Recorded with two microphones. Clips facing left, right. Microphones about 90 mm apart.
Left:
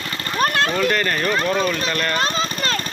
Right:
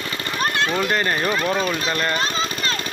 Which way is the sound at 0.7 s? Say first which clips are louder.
Left 1 dB; 20° right (ahead or behind).